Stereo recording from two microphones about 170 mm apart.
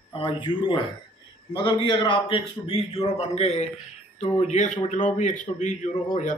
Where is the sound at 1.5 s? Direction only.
30° left (ahead or behind).